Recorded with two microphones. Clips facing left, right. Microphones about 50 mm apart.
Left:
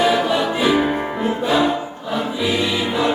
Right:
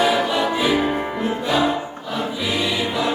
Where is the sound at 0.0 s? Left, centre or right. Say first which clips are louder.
Left 1 dB; centre.